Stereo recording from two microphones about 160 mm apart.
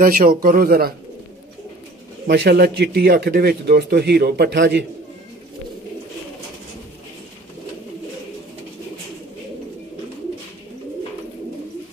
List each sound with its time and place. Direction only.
0.0 s speech: 65° right (ahead or behind)
2.2 s a man's voice: 90° right